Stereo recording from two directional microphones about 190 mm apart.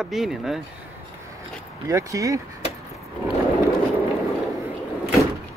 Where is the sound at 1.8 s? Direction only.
15° right (ahead or behind).